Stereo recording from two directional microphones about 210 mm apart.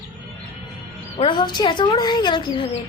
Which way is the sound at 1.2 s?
20° left (ahead or behind).